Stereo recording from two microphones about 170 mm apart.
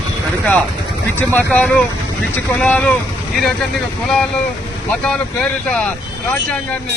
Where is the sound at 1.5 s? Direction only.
10° left (ahead or behind).